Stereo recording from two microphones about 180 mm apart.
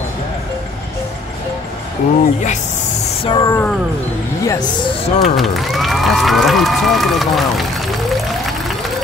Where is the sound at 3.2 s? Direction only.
25° left (ahead or behind).